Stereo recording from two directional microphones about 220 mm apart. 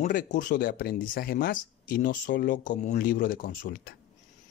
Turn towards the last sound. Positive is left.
turn(degrees=45)  # may be behind; listen again after turning